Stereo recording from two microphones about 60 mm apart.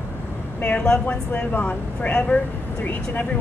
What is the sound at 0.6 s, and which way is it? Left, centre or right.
A woman's voice, left.